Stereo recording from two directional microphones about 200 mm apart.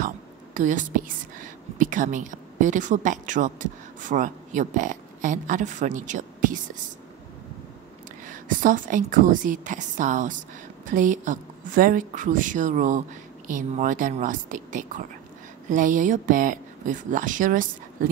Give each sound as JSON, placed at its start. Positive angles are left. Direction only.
{"t": 0.6, "sound": "a woman's voice", "side_deg": -40}
{"t": 8.3, "sound": "a woman's voice", "side_deg": -40}